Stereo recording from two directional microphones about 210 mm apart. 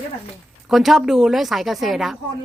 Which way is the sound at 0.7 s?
Centre (ahead or behind).